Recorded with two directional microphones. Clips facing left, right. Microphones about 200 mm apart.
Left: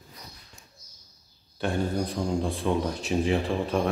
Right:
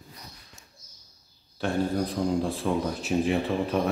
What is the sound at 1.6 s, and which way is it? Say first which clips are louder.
Speech: right 1 dB; centre (ahead or behind).